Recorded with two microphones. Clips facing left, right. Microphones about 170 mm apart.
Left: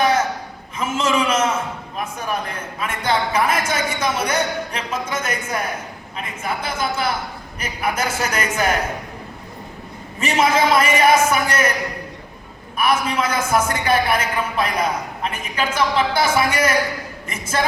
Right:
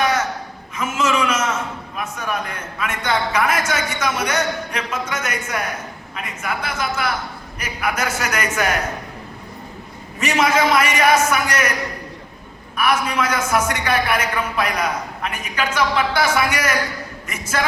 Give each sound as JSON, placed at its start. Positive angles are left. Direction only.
{"t": 0.0, "sound": "a sound", "side_deg": 30}
{"t": 2.1, "sound": "a man's voice", "side_deg": 30}
{"t": 10.2, "sound": "a man's voice", "side_deg": 30}
{"t": 12.8, "sound": "a man's voice", "side_deg": 30}